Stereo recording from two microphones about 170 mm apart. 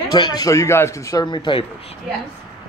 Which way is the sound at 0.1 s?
25° left (ahead or behind).